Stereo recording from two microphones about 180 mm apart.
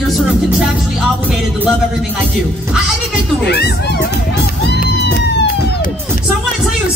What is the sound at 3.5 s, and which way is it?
Speech, 65° left (ahead or behind).